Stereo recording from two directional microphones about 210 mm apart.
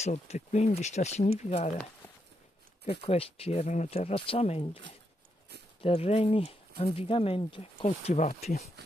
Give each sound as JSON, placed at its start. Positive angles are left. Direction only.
{"t": 0.0, "sound": "speech", "side_deg": 30}
{"t": 2.9, "sound": "speech", "side_deg": 30}